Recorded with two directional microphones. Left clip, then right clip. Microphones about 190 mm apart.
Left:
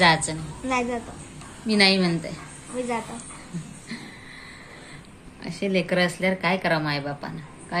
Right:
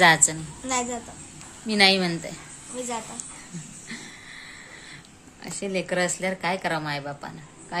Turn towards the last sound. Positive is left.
turn(degrees=-10)  # may be behind; listen again after turning